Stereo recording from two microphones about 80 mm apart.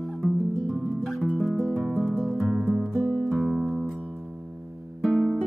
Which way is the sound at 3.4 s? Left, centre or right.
Centre.